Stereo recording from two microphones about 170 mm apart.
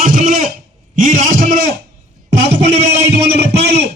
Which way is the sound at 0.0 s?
55° right (ahead or behind).